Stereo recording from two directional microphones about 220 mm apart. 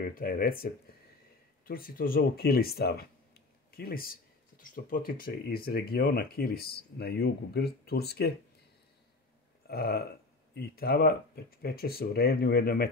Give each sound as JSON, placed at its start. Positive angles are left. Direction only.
{"t": 0.0, "sound": "speech", "side_deg": 40}
{"t": 1.7, "sound": "speech", "side_deg": 40}
{"t": 9.7, "sound": "burping", "side_deg": 45}
{"t": 10.5, "sound": "speech", "side_deg": 45}